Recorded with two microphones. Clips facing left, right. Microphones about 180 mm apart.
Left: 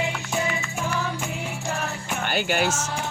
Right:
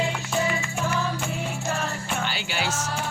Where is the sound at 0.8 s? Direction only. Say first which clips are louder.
Right 1 dB; 15° left (ahead or behind).